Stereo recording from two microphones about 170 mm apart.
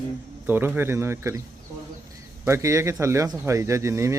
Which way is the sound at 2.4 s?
15° right (ahead or behind).